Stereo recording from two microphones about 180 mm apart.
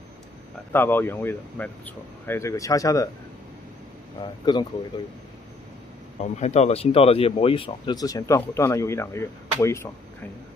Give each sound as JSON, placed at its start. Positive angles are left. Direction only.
{"t": 0.7, "sound": "speech", "side_deg": 10}
{"t": 4.5, "sound": "speech", "side_deg": 25}
{"t": 6.2, "sound": "speech", "side_deg": 40}